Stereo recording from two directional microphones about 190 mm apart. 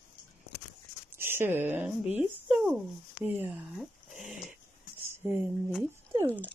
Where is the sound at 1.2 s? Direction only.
10° right (ahead or behind).